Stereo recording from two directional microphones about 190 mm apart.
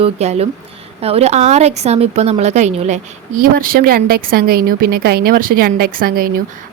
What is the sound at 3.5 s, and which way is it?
A woman's voice, 55° right (ahead or behind).